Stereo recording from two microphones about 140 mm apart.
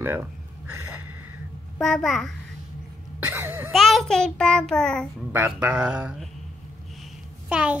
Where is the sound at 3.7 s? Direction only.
Centre (ahead or behind).